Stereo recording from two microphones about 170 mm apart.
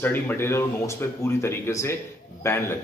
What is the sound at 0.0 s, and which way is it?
A man's voice, 10° left (ahead or behind).